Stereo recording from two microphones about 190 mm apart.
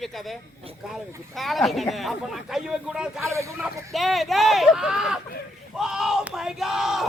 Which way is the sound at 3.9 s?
Centre (ahead or behind).